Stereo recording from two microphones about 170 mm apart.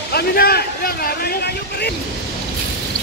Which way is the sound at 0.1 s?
65° left (ahead or behind).